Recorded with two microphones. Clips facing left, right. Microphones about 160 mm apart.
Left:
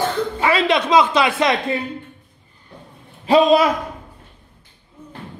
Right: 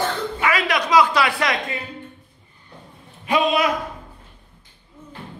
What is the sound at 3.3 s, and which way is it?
Speech, 35° left (ahead or behind).